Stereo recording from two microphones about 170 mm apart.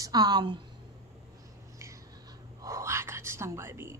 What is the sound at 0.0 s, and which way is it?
Speech, 25° right (ahead or behind).